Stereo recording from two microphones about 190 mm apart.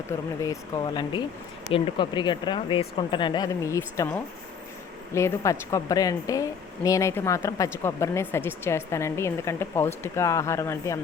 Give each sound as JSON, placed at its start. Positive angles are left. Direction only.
{"t": 0.1, "sound": "a woman's voice", "side_deg": 15}